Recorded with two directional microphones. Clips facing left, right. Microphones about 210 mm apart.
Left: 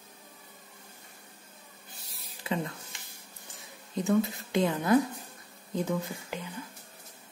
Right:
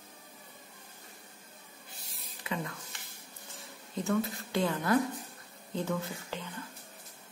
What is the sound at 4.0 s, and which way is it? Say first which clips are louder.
A woman's voice: left 4 dB; 20° left (ahead or behind).